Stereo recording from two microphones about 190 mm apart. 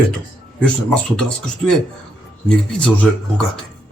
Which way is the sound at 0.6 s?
5° left (ahead or behind).